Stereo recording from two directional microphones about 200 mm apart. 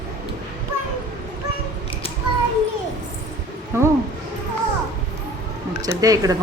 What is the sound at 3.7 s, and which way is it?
Speech, 15° right (ahead or behind).